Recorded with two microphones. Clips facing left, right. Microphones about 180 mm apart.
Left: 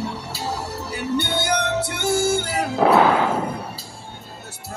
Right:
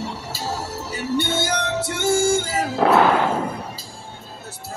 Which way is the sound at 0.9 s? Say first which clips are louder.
Right 1 dB; 65° left (ahead or behind).